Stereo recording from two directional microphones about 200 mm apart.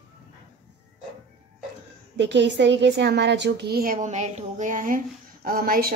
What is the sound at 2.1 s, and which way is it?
A woman's voice, 60° right (ahead or behind).